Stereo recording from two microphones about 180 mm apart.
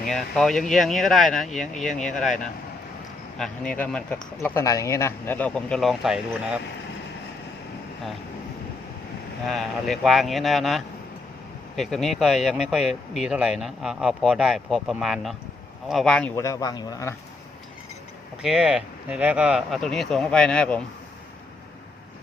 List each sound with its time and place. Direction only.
0.1 s a man's voice: centre (ahead or behind)
9.5 s a man's voice: centre (ahead or behind)
16.3 s speech: 15° left (ahead or behind)
18.4 s a man's voice: 5° right (ahead or behind)